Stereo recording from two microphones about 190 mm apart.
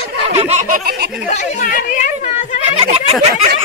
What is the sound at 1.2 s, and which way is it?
Speech, 40° left (ahead or behind).